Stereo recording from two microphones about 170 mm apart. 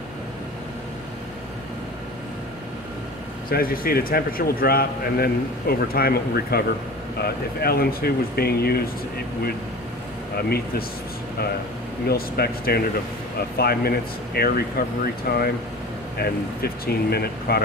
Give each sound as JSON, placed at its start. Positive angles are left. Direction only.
{"t": 3.4, "sound": "a man's voice", "side_deg": 60}
{"t": 12.1, "sound": "a man's voice", "side_deg": 65}